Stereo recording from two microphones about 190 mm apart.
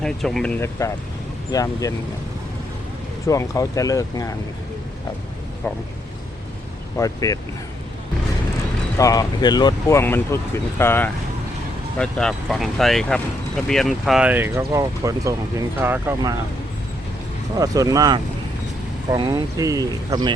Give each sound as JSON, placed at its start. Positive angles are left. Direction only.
{"t": 0.0, "sound": "speech", "side_deg": 0}
{"t": 3.2, "sound": "speech", "side_deg": 15}
{"t": 5.6, "sound": "speech", "side_deg": 10}
{"t": 6.9, "sound": "speech", "side_deg": 15}
{"t": 9.0, "sound": "speech", "side_deg": 20}
{"t": 17.6, "sound": "speech", "side_deg": -20}